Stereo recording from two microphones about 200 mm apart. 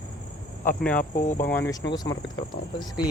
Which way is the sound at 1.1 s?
45° left (ahead or behind).